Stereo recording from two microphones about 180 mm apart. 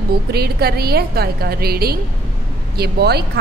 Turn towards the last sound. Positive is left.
turn(degrees=-65)  # may be behind; listen again after turning